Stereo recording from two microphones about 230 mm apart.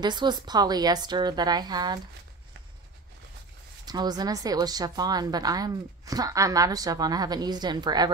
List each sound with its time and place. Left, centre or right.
0.0 s a woman's voice: centre
3.8 s a woman's voice: centre